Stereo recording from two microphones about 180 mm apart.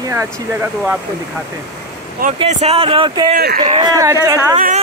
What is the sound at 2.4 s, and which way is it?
Speech, 40° right (ahead or behind).